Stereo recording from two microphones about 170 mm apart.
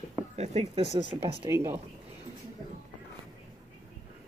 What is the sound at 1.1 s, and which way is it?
Speech, 15° right (ahead or behind).